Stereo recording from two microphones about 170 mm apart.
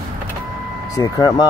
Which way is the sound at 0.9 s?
20° left (ahead or behind).